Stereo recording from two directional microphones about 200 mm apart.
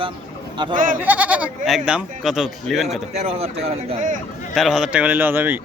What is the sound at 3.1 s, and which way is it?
Speech, 30° right (ahead or behind).